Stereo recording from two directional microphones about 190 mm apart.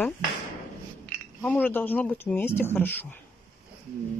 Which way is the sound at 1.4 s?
10° left (ahead or behind).